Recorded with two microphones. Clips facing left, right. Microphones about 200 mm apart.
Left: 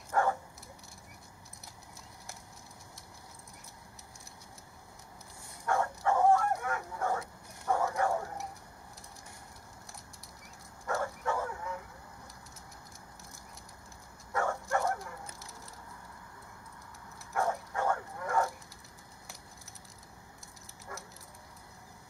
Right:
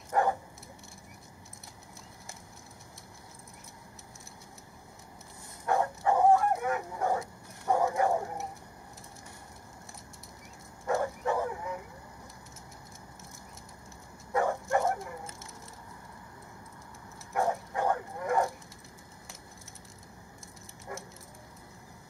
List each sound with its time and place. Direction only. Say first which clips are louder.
0.1 s dog: right 2 dB; 15° right (ahead or behind)
5.7 s bow-wow: right 2 dB; 20° right (ahead or behind)
10.9 s bow-wow: right 4 dB; 20° right (ahead or behind)
14.3 s bow-wow: right 4 dB; 20° right (ahead or behind)
17.3 s bow-wow: right 3 dB; 20° right (ahead or behind)
20.9 s a sound: right 5 dB; 20° right (ahead or behind)